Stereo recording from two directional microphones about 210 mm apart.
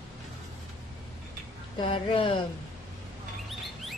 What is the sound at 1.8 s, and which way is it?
Speech, 25° left (ahead or behind).